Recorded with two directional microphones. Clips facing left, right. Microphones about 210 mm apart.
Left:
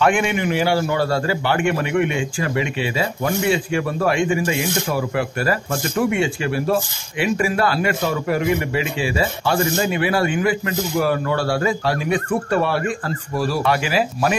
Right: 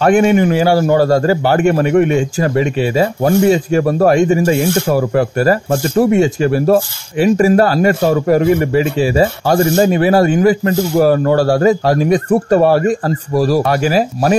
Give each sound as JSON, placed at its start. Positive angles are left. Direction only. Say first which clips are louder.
{"t": 0.0, "sound": "a man's voice", "louder": "right 8 dB", "side_deg": -40}